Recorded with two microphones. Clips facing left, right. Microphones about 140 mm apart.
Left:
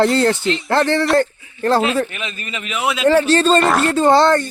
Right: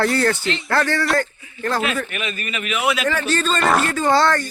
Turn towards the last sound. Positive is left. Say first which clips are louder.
# left 5 dB
turn(degrees=25)  # may be behind; listen again after turning